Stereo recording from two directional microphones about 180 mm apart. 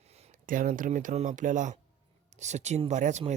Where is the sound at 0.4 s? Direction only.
50° right (ahead or behind).